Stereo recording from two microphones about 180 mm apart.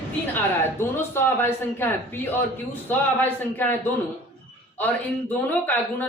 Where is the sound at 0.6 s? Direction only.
15° left (ahead or behind).